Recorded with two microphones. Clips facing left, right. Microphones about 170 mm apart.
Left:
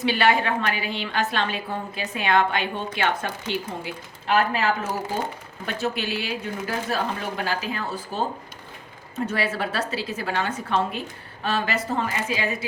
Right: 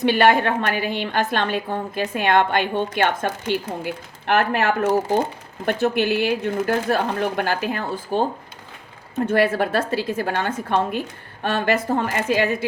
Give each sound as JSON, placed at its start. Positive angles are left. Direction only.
{"t": 0.0, "sound": "a woman's voice", "side_deg": -55}
{"t": 4.3, "sound": "a woman's voice", "side_deg": -65}